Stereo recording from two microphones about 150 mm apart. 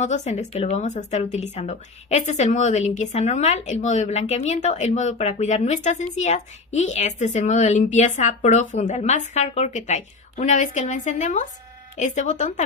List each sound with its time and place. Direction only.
0.0 s speech: 50° left (ahead or behind)